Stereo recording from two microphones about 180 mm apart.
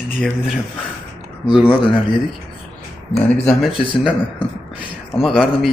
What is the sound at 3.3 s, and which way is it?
Speech, 5° left (ahead or behind).